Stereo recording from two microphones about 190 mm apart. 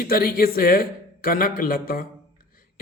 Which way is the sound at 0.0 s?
50° left (ahead or behind).